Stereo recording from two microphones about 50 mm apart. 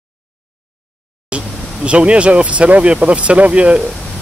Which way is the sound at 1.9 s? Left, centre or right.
Right.